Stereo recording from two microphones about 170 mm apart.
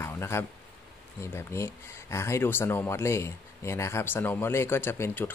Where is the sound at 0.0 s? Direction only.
15° left (ahead or behind).